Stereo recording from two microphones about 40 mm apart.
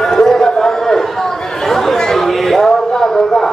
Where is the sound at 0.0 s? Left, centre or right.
Centre.